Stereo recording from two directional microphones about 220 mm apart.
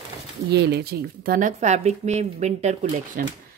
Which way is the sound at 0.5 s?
50° right (ahead or behind).